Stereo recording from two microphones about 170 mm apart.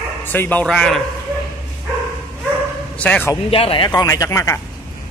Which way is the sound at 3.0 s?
10° left (ahead or behind).